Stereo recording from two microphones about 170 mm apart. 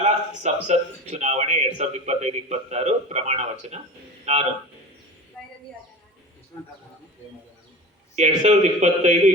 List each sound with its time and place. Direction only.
0.0 s a man's voice: 40° right (ahead or behind)
8.1 s a man's voice: 45° right (ahead or behind)